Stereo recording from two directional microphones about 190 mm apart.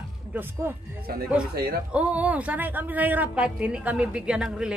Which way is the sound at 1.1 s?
55° right (ahead or behind).